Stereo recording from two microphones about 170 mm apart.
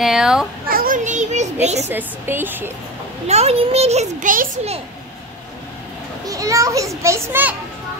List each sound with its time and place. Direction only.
0.0 s a child's voice: 5° right (ahead or behind)
0.7 s children playing: 55° right (ahead or behind)
1.8 s a woman's voice: 15° right (ahead or behind)
3.3 s a child's voice: 40° right (ahead or behind)
6.2 s a child's voice: 20° right (ahead or behind)